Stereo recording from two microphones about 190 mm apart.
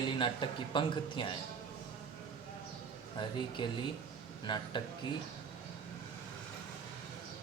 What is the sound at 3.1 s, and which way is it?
Speech, 25° left (ahead or behind).